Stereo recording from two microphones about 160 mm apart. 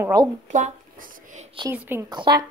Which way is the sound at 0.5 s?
50° right (ahead or behind).